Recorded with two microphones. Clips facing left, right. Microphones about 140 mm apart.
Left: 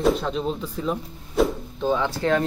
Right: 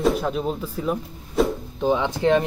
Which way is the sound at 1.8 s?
15° right (ahead or behind).